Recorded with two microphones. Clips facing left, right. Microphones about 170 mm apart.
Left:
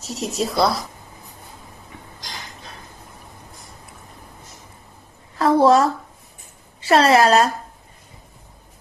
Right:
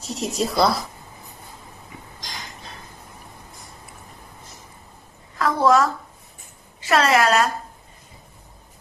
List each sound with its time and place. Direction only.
0.0 s a woman's voice: centre (ahead or behind)
5.4 s a woman's voice: 30° left (ahead or behind)